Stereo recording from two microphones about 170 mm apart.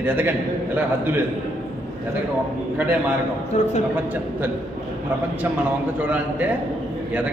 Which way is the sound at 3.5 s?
45° left (ahead or behind).